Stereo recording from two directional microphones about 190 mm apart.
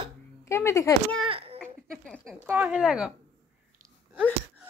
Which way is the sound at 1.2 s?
30° right (ahead or behind).